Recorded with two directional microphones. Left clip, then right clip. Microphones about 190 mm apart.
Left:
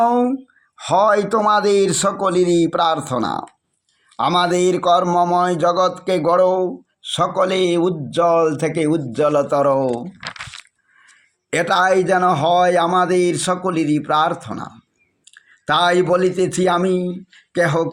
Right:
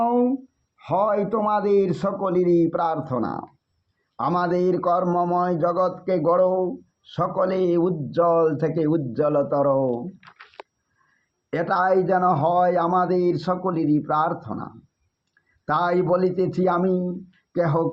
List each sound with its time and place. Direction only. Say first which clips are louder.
0.0 s a sound: left 5 dB; 30° left (ahead or behind)
0.8 s speech: left 7 dB; 25° left (ahead or behind)
9.7 s speech: left 4 dB; 45° left (ahead or behind); by 10.6 s 75° left (ahead or behind)
11.5 s speech: left 5 dB; 30° left (ahead or behind)